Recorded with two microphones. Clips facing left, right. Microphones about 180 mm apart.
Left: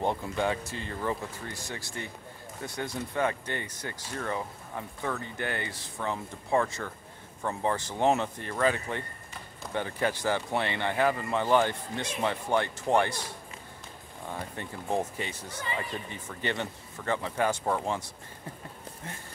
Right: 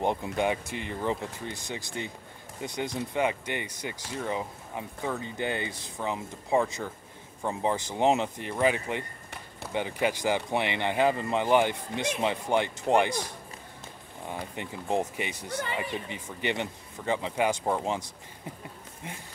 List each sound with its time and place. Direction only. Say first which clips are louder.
0.0 s speech: right 2 dB; 15° right (ahead or behind)
14.2 s speech: right 1 dB; 15° right (ahead or behind)